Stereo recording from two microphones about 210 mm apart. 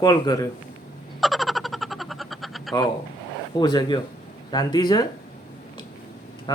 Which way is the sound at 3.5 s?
20° left (ahead or behind).